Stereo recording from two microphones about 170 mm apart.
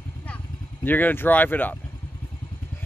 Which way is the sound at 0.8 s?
10° left (ahead or behind).